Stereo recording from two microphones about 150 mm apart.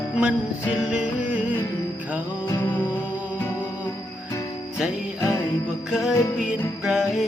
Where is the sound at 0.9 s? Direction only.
10° right (ahead or behind).